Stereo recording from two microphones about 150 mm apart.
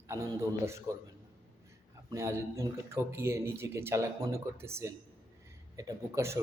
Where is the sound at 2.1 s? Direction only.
20° right (ahead or behind).